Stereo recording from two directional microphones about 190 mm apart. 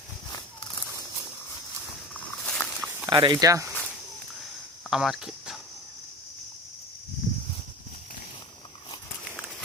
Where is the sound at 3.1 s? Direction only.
25° right (ahead or behind).